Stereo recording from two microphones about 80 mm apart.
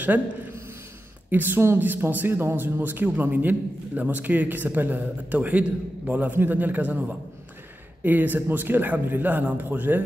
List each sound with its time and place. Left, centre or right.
1.3 s speech: right